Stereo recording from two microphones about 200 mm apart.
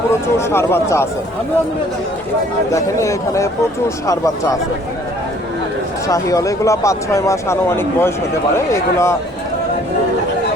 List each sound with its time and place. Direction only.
0.1 s speech: 10° left (ahead or behind)
2.7 s speech: 15° left (ahead or behind)
6.1 s speech: 15° left (ahead or behind)